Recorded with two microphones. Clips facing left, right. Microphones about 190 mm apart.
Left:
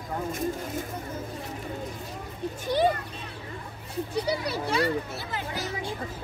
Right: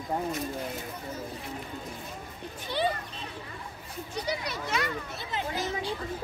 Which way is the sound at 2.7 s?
45° left (ahead or behind).